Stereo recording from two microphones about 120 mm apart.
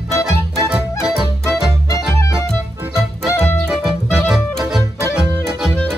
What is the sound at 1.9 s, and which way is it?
Music, 25° left (ahead or behind).